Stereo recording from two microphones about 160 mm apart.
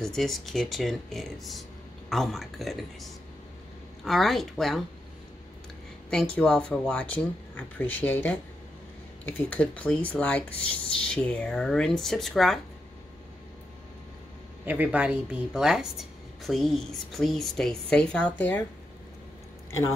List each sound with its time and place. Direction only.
0.0 s a woman's voice: centre (ahead or behind)
6.0 s speech: 5° left (ahead or behind)
9.4 s a woman's voice: 10° left (ahead or behind)
14.7 s a woman's voice: 10° right (ahead or behind); by 18.6 s 10° left (ahead or behind)